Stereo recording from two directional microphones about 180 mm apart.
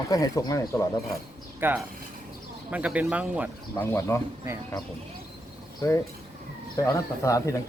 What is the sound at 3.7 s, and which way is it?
Speech, 15° left (ahead or behind).